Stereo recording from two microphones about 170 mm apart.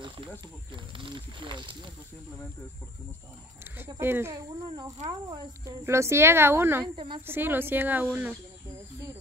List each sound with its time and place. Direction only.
0.9 s speech: 30° right (ahead or behind)
3.7 s a woman's voice: 10° right (ahead or behind)